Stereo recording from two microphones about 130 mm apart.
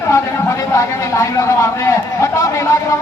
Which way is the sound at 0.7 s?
25° left (ahead or behind).